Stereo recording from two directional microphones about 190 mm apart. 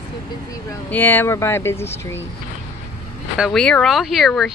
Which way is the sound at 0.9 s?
10° left (ahead or behind).